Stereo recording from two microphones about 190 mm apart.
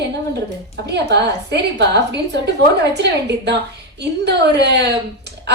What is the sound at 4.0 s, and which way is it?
A woman's voice, 60° right (ahead or behind).